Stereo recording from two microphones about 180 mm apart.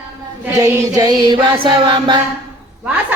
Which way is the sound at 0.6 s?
20° right (ahead or behind).